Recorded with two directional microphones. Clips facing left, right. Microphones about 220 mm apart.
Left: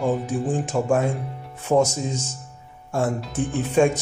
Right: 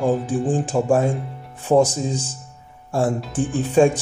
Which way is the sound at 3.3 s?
30° right (ahead or behind).